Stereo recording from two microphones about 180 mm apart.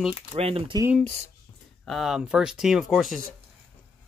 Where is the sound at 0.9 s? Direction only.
10° left (ahead or behind).